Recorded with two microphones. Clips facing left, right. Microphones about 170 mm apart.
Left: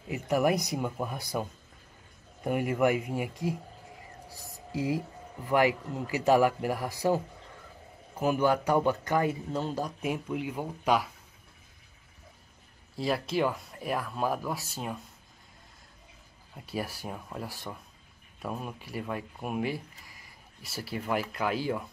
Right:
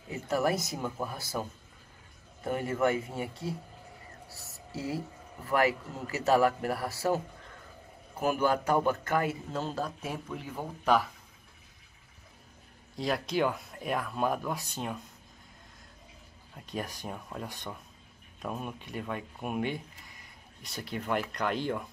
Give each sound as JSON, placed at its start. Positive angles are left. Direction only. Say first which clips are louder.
{"t": 0.1, "sound": "a sound", "louder": "left 3 dB", "side_deg": 15}
{"t": 0.7, "sound": "speech", "louder": "left 3 dB", "side_deg": 15}
{"t": 2.4, "sound": "speech", "louder": "left 2 dB", "side_deg": 15}
{"t": 4.3, "sound": "a sound", "louder": "left 5 dB", "side_deg": 15}
{"t": 5.7, "sound": "speech", "louder": "left 3 dB", "side_deg": -40}
{"t": 6.2, "sound": "speech", "louder": "left 1 dB", "side_deg": 15}
{"t": 8.4, "sound": "speech", "louder": "left 2 dB", "side_deg": 15}
{"t": 12.9, "sound": "speech", "louder": "left 1 dB", "side_deg": 5}
{"t": 16.5, "sound": "speech", "louder": "left 2 dB", "side_deg": 5}